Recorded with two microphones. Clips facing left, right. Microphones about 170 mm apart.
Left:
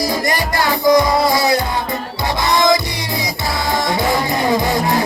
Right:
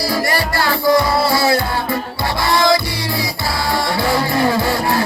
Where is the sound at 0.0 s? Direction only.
20° left (ahead or behind).